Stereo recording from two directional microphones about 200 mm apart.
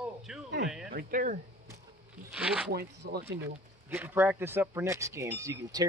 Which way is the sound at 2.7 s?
50° right (ahead or behind).